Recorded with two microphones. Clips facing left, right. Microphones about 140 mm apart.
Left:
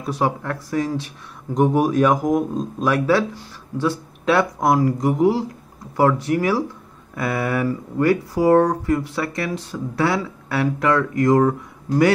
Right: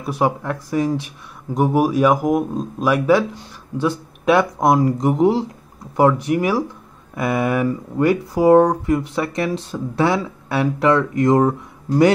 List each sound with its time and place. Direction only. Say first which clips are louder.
0.0 s speech: right 2 dB; 10° right (ahead or behind)